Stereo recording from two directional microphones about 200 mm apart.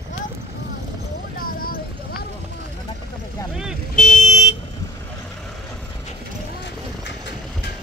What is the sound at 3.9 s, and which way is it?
Car alarm, 35° left (ahead or behind).